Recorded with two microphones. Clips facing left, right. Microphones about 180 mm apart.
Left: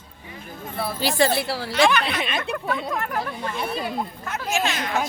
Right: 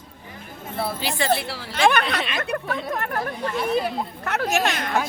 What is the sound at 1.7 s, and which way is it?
Speech, 55° right (ahead or behind).